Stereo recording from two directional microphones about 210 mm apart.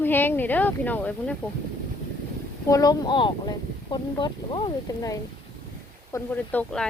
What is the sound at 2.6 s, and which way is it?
Speech, 15° left (ahead or behind).